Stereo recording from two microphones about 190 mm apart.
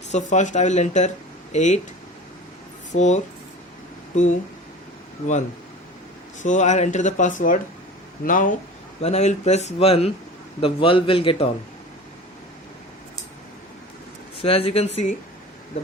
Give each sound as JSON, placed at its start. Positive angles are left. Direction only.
{"t": 0.1, "sound": "speech", "side_deg": 40}
{"t": 2.9, "sound": "speech", "side_deg": 40}
{"t": 6.4, "sound": "a man's voice", "side_deg": 40}
{"t": 14.3, "sound": "speech", "side_deg": 30}